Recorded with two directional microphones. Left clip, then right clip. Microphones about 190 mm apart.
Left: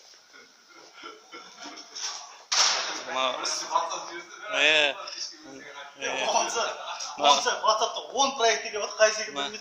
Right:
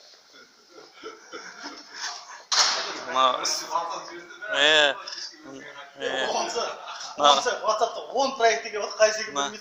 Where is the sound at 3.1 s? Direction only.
10° right (ahead or behind).